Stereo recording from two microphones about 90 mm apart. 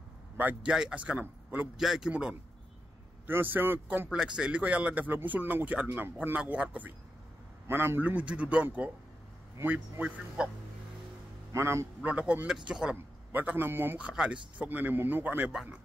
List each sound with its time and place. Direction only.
0.4 s a man's voice: 20° right (ahead or behind)
1.8 s speech: 5° right (ahead or behind)
3.3 s speech: 25° right (ahead or behind)
4.1 s speech: 5° right (ahead or behind)
7.6 s speech: 25° right (ahead or behind)
10.0 s speech: 10° right (ahead or behind)
11.5 s a man's voice: 30° right (ahead or behind)
12.0 s speech: 15° right (ahead or behind)
13.3 s speech: 20° right (ahead or behind)
13.9 s speech: 10° right (ahead or behind)